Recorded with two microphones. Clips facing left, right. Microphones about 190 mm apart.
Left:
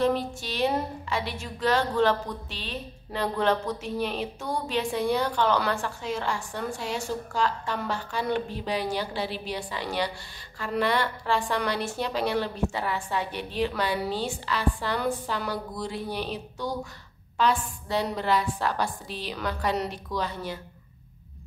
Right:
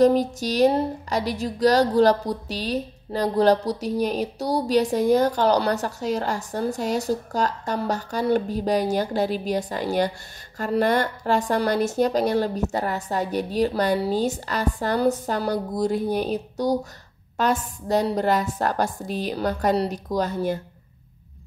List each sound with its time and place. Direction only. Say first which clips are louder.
0.0 s a woman's voice: right 8 dB; 40° right (ahead or behind)